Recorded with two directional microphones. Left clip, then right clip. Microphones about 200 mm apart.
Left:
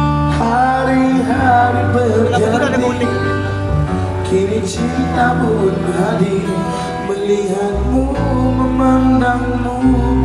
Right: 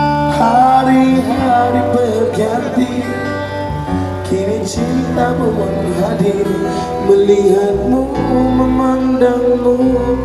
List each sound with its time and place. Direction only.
0.0 s music: 25° right (ahead or behind)